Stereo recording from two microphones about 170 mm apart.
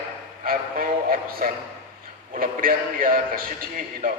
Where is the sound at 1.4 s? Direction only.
55° right (ahead or behind).